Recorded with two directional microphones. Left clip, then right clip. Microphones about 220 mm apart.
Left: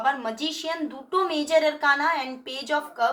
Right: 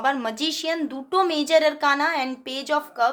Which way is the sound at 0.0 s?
55° right (ahead or behind).